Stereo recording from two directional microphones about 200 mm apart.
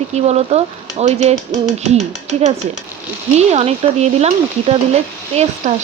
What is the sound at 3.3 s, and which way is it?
Speech, 30° right (ahead or behind).